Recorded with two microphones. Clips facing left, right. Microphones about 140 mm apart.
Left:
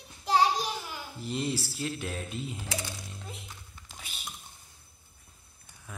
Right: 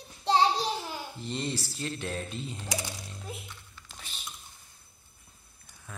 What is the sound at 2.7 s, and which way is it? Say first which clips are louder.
Speech: right 1 dB; 20° right (ahead or behind).